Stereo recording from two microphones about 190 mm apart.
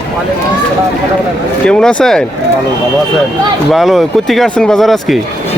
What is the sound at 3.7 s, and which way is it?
Speech, centre (ahead or behind).